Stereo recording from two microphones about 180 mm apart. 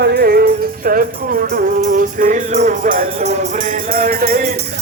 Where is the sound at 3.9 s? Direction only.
55° right (ahead or behind).